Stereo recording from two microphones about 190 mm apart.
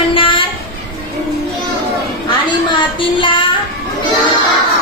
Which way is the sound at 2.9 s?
25° left (ahead or behind).